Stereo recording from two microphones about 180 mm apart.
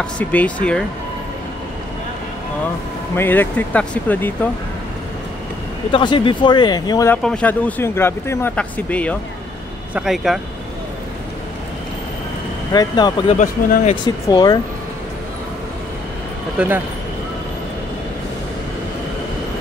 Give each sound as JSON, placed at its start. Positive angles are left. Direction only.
{"t": 0.0, "sound": "speech", "side_deg": 10}
{"t": 3.2, "sound": "speech", "side_deg": 10}
{"t": 5.9, "sound": "speech", "side_deg": 30}
{"t": 7.1, "sound": "speech", "side_deg": 5}
{"t": 12.7, "sound": "speech", "side_deg": 25}
{"t": 13.4, "sound": "speech", "side_deg": 40}
{"t": 14.0, "sound": "speech", "side_deg": 25}
{"t": 16.5, "sound": "speech", "side_deg": -10}